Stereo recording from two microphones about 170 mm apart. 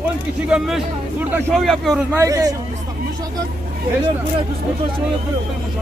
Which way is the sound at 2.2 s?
20° right (ahead or behind).